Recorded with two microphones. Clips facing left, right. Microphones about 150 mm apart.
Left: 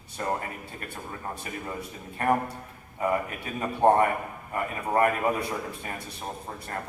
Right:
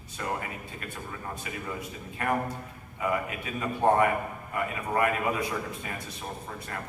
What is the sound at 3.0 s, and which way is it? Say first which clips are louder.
A man's voice: left 2 dB; 35° left (ahead or behind).